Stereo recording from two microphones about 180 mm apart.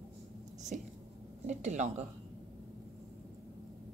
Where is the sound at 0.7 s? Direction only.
45° right (ahead or behind).